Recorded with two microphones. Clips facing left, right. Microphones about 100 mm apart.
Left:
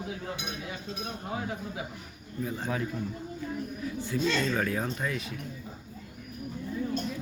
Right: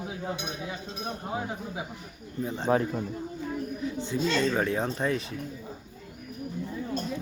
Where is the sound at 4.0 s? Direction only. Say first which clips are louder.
Right 1 dB; 25° right (ahead or behind).